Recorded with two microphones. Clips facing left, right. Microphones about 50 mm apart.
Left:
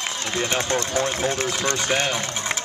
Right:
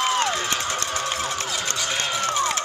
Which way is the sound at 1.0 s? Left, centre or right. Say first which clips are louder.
Left 3 dB; left.